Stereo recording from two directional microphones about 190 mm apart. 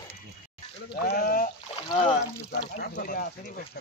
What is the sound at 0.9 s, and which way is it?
Speech, 55° left (ahead or behind).